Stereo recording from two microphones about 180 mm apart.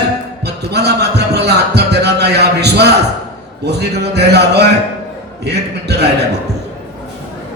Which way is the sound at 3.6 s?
70° right (ahead or behind).